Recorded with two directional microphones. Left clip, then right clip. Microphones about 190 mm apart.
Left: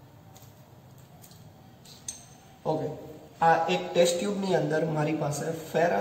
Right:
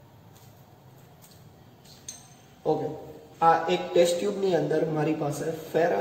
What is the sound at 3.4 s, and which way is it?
A man's voice, 10° right (ahead or behind).